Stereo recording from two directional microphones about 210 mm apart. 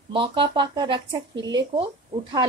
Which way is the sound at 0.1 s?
25° right (ahead or behind).